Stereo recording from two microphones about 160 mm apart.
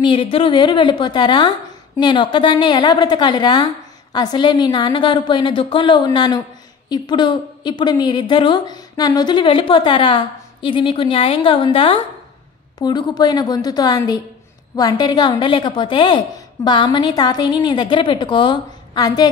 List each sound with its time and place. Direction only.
0.0 s a woman's voice: 30° left (ahead or behind)